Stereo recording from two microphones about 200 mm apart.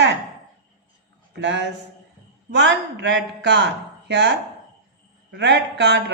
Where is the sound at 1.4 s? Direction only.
60° right (ahead or behind).